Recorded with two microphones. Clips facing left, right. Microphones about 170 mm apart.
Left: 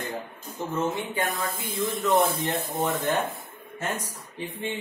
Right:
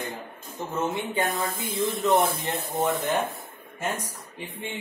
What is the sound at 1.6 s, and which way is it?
Speech, centre (ahead or behind).